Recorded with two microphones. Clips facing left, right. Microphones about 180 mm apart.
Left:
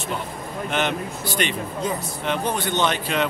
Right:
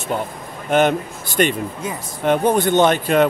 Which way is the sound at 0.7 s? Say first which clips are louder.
Right 9 dB; 45° right (ahead or behind).